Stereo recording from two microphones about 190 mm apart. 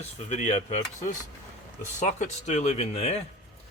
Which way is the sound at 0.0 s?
40° left (ahead or behind).